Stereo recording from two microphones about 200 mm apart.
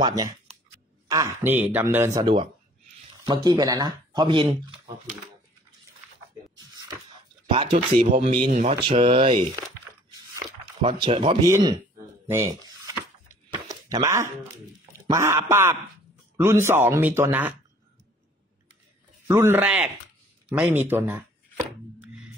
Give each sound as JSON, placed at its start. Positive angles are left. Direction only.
{"t": 0.0, "sound": "speech", "side_deg": -20}
{"t": 7.4, "sound": "speech", "side_deg": -25}
{"t": 10.8, "sound": "speech", "side_deg": -25}
{"t": 12.4, "sound": "a sound", "side_deg": -20}
{"t": 13.7, "sound": "speech", "side_deg": -15}
{"t": 19.2, "sound": "speech", "side_deg": -15}